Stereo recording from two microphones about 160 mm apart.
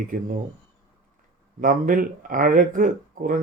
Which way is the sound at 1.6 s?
60° right (ahead or behind).